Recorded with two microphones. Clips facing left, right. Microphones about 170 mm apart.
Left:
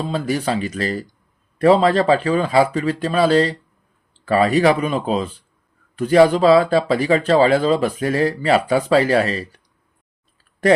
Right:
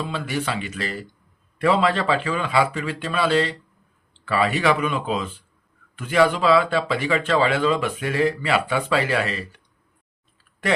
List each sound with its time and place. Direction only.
0.0 s speech: 40° left (ahead or behind)